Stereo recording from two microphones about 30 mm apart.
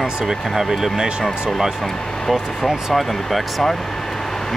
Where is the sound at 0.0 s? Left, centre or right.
Centre.